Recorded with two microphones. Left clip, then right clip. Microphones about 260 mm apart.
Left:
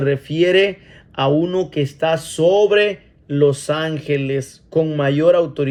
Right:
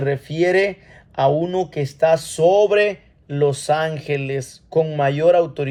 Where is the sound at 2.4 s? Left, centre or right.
Right.